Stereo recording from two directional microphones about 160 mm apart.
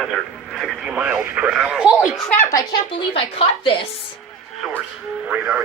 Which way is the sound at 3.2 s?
35° left (ahead or behind).